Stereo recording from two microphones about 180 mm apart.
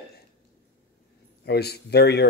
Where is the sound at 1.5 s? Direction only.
65° left (ahead or behind).